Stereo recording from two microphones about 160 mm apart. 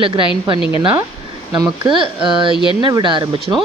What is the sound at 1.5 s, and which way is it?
Speech, 30° right (ahead or behind).